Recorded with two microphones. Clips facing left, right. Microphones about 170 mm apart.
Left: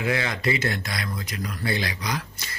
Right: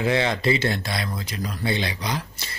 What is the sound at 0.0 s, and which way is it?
Speech, 25° right (ahead or behind).